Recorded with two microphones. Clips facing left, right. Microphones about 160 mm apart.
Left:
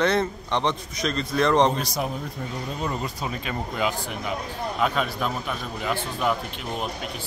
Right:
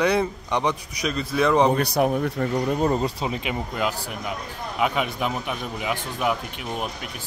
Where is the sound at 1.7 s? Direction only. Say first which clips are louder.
Right 7 dB; 60° right (ahead or behind).